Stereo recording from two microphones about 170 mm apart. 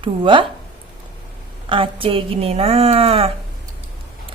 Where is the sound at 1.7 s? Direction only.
30° right (ahead or behind).